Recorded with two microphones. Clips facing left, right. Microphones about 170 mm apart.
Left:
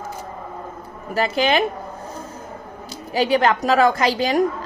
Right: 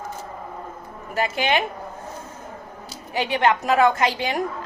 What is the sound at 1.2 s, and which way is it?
Speech, 35° left (ahead or behind).